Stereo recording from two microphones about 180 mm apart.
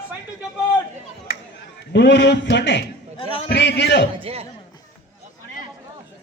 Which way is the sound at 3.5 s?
70° left (ahead or behind).